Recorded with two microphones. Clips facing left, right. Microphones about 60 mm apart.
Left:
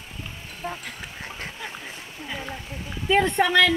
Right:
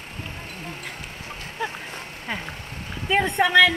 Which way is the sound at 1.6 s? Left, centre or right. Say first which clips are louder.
Right 5 dB; right.